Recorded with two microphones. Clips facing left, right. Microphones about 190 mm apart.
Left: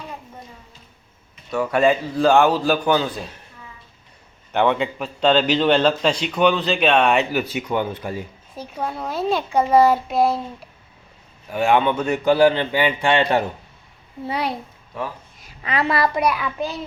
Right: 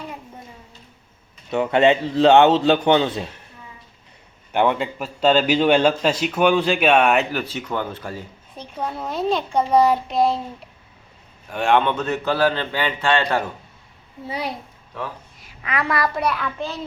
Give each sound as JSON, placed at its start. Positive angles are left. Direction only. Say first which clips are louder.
{"t": 1.5, "sound": "a man's voice", "louder": "right 1 dB", "side_deg": -25}
{"t": 4.5, "sound": "a man's voice", "louder": "left 1 dB", "side_deg": -10}
{"t": 7.5, "sound": "a man's voice", "louder": "left 3 dB", "side_deg": 15}
{"t": 8.5, "sound": "a child's voice", "louder": "left 1 dB", "side_deg": 5}
{"t": 11.5, "sound": "a man's voice", "louder": "left 1 dB", "side_deg": 5}
{"t": 14.3, "sound": "a child's voice", "louder": "left 3 dB", "side_deg": 65}
{"t": 15.6, "sound": "a woman's voice", "louder": "left 2 dB", "side_deg": 30}
{"t": 16.2, "sound": "a man's voice", "louder": "left 2 dB", "side_deg": 10}